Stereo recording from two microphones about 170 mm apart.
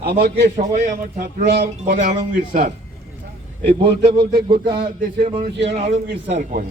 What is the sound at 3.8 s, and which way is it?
Speech, 30° right (ahead or behind).